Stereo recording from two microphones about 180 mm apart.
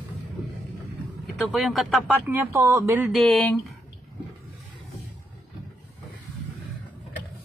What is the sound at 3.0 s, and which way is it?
Speech, centre (ahead or behind).